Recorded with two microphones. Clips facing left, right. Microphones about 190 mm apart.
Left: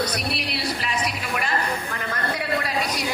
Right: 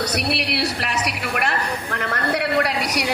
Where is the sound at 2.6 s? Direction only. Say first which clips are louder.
Right 4 dB; 70° right (ahead or behind).